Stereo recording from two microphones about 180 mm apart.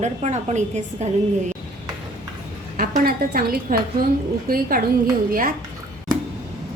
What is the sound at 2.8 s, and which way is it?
A woman's voice, 55° right (ahead or behind).